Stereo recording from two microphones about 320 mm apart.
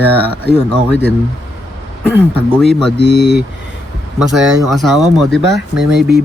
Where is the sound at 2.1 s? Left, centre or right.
Centre.